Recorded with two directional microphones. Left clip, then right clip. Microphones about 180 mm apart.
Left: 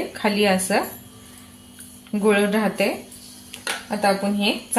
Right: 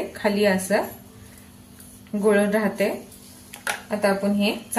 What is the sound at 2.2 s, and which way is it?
Speech, 30° left (ahead or behind).